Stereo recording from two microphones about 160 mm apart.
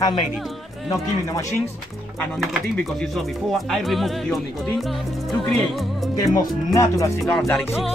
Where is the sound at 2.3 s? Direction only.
Centre (ahead or behind).